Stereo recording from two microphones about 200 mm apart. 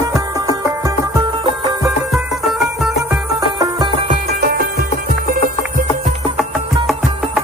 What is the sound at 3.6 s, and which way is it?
Music, 20° right (ahead or behind).